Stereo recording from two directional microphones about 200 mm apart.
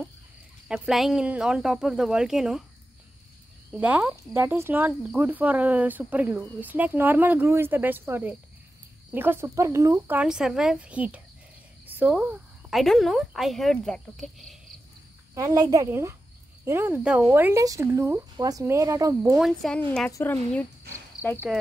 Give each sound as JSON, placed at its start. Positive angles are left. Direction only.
{"t": 0.7, "sound": "speech", "side_deg": -5}
{"t": 3.7, "sound": "a woman's voice", "side_deg": -5}
{"t": 15.3, "sound": "speech", "side_deg": -20}
{"t": 19.3, "sound": "speech", "side_deg": 0}
{"t": 20.1, "sound": "a woman's voice", "side_deg": 10}